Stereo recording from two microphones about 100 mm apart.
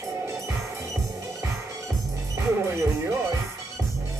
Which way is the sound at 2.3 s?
25° right (ahead or behind).